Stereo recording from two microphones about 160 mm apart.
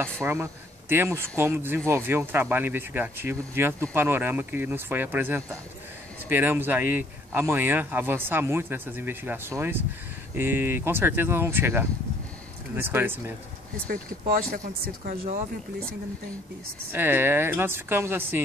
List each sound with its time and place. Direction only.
0.0 s speech: 15° right (ahead or behind)
13.8 s speech: 60° right (ahead or behind)
15.0 s speech: 45° right (ahead or behind)
16.9 s speech: 15° right (ahead or behind)